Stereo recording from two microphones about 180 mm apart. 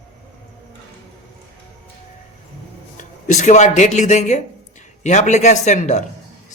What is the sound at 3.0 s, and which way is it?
Speech, 45° left (ahead or behind).